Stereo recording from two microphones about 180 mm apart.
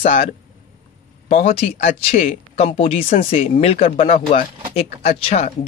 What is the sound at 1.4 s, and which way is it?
A man's voice, 35° left (ahead or behind).